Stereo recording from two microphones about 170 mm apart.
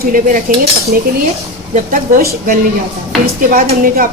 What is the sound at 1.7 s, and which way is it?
Speech, 50° right (ahead or behind).